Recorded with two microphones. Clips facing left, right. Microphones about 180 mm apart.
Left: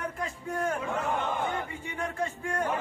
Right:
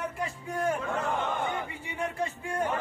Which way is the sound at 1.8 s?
10° right (ahead or behind).